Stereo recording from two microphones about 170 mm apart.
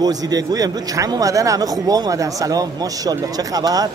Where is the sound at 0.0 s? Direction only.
20° right (ahead or behind).